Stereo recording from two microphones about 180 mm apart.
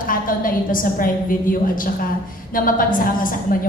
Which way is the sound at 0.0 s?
50° left (ahead or behind).